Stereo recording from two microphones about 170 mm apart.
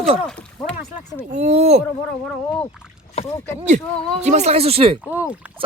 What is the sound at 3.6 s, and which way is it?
Speech, 45° right (ahead or behind).